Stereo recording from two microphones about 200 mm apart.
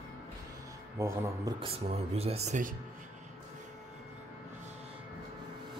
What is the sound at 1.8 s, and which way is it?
Speech, 30° right (ahead or behind).